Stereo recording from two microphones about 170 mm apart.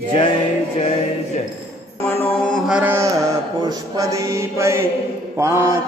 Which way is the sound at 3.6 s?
20° right (ahead or behind).